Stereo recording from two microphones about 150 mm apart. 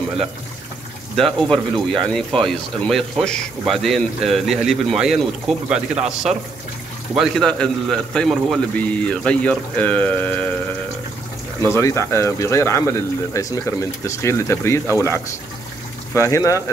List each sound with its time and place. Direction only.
1.1 s speech: 5° left (ahead or behind)
7.2 s a man's voice: 5° left (ahead or behind)
11.7 s a man's voice: 15° left (ahead or behind)